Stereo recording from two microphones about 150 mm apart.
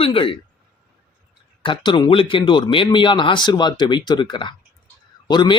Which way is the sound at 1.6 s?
30° left (ahead or behind).